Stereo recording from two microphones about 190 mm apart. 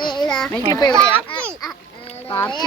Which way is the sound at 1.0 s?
25° left (ahead or behind).